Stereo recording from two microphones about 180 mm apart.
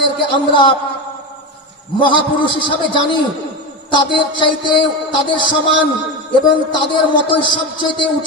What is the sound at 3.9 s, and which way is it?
A man's voice, 25° left (ahead or behind).